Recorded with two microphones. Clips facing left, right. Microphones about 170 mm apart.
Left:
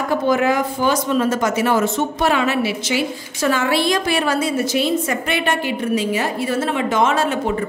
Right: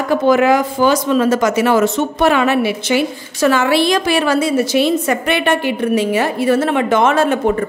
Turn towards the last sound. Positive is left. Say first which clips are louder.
# right 5 dB
turn(degrees=-55)  # may be behind; listen again after turning